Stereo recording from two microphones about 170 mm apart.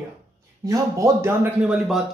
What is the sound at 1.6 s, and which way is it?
Speech, 5° right (ahead or behind).